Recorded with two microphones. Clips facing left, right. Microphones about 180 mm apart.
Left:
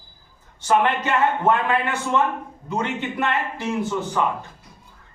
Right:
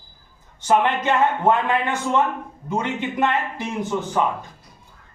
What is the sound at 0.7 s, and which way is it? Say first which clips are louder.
Speech: right 1 dB; 15° right (ahead or behind).